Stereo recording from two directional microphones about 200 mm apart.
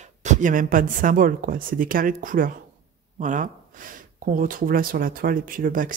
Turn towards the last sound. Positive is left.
turn(degrees=-45)  # may be behind; listen again after turning